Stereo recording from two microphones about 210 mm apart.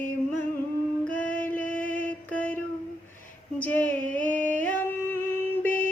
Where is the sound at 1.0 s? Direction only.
5° left (ahead or behind).